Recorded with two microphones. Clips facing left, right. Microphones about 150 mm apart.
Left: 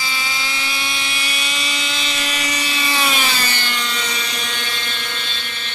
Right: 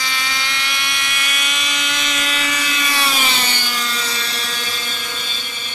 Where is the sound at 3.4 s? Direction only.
10° right (ahead or behind).